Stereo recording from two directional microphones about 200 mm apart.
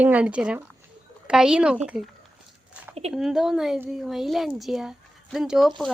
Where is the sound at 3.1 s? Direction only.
Centre (ahead or behind).